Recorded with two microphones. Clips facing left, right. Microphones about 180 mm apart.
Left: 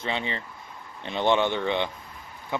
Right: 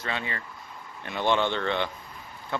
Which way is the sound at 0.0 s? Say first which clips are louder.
Left 3 dB; 20° left (ahead or behind).